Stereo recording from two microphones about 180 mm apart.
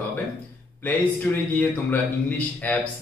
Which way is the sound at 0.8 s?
10° left (ahead or behind).